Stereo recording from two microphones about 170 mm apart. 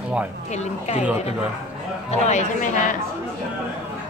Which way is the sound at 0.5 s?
40° left (ahead or behind).